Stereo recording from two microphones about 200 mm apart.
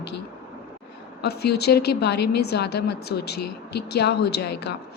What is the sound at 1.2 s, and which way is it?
A woman's voice, 55° left (ahead or behind).